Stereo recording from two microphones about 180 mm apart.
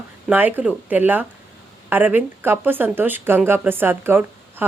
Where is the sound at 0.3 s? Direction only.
10° right (ahead or behind).